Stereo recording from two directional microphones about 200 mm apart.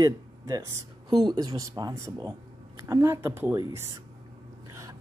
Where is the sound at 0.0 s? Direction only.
15° right (ahead or behind).